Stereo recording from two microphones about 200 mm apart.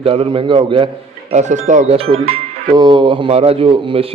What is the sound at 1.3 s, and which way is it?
A man's voice, 35° right (ahead or behind).